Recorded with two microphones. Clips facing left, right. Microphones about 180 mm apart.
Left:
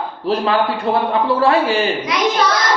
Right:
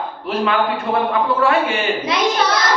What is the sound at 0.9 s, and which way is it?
Speech, 30° left (ahead or behind).